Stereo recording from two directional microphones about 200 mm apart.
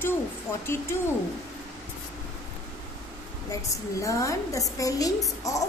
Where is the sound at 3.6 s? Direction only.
15° left (ahead or behind).